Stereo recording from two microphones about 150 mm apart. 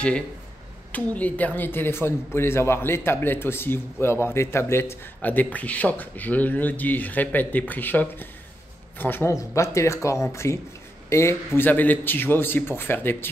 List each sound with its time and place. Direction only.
0.9 s a man's voice: 10° left (ahead or behind)